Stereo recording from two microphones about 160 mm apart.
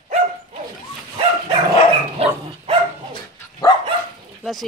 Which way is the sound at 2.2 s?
40° right (ahead or behind).